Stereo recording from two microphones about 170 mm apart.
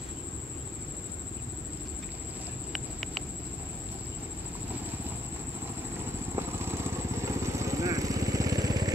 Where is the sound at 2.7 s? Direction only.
Centre (ahead or behind).